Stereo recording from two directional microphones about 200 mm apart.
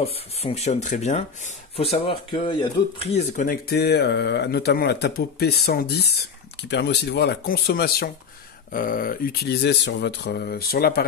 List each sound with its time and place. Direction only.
0.0 s speech: 30° left (ahead or behind)
3.4 s speech: 50° left (ahead or behind)